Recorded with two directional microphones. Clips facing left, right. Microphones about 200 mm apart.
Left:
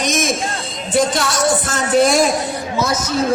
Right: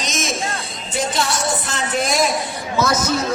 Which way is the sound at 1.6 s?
45° left (ahead or behind).